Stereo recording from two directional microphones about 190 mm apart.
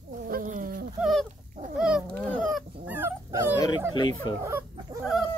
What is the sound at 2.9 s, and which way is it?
Dog, 10° right (ahead or behind).